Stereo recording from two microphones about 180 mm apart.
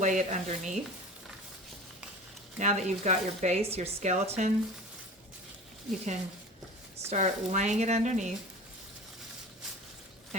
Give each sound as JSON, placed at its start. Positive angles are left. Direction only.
{"t": 0.0, "sound": "speech", "side_deg": -40}
{"t": 2.6, "sound": "speech", "side_deg": -40}
{"t": 6.9, "sound": "speech", "side_deg": -40}